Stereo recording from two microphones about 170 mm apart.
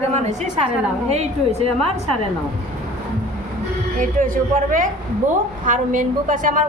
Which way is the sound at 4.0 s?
50° right (ahead or behind).